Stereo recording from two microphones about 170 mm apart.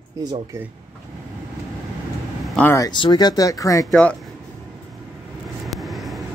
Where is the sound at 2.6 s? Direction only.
15° left (ahead or behind).